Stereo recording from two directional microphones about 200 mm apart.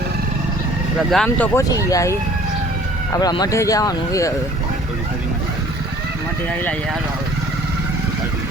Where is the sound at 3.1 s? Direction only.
20° left (ahead or behind).